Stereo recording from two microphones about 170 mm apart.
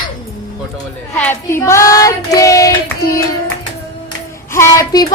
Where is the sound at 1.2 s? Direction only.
10° left (ahead or behind).